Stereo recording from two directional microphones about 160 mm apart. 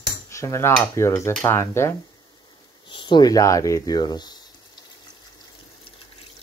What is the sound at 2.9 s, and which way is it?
Speech, 30° left (ahead or behind).